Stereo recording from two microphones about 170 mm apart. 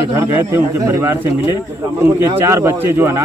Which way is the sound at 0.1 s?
15° right (ahead or behind).